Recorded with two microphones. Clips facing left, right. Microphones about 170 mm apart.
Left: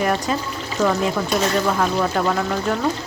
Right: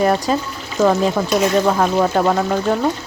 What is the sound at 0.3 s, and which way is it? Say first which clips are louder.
Speech: right 3 dB; 35° right (ahead or behind).